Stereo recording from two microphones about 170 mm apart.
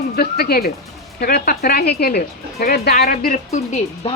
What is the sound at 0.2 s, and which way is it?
Speech, 65° left (ahead or behind).